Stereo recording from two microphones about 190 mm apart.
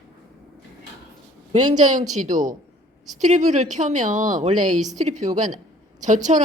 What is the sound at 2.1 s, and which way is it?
A woman's voice, 40° right (ahead or behind).